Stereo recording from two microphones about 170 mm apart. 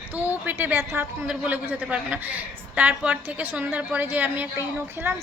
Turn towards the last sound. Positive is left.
turn(degrees=-10)  # may be behind; listen again after turning